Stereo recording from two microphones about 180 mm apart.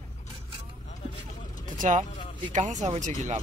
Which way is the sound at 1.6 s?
45° right (ahead or behind).